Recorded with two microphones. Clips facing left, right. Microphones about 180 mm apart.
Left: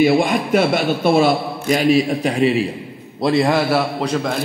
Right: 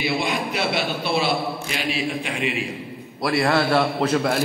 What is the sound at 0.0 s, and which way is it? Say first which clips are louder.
A man's voice: left 9 dB; 50° left (ahead or behind).